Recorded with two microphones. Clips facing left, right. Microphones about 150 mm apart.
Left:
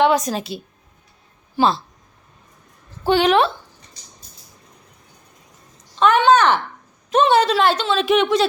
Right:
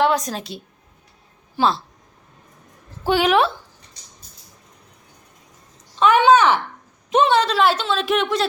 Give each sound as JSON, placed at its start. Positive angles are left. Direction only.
{"t": 0.0, "sound": "speech", "side_deg": 0}
{"t": 3.1, "sound": "speech", "side_deg": -5}
{"t": 6.0, "sound": "speech", "side_deg": -10}
{"t": 7.3, "sound": "speech", "side_deg": 5}